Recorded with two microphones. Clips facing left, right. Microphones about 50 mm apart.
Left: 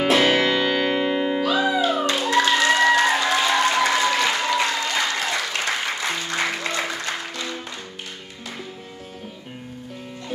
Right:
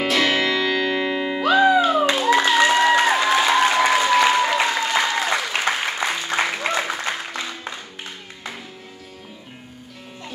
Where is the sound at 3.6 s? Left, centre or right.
Right.